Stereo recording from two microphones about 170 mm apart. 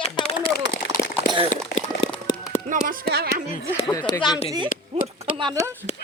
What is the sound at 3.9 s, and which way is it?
Speech, 25° left (ahead or behind).